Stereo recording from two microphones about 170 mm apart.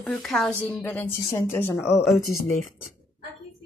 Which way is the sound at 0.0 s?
Centre (ahead or behind).